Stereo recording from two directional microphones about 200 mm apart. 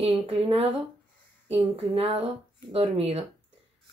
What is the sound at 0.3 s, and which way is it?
Speech, 30° right (ahead or behind).